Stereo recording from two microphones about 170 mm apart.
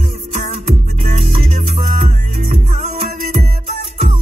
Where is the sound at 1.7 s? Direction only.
45° right (ahead or behind).